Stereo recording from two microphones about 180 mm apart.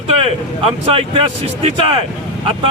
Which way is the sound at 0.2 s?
30° right (ahead or behind).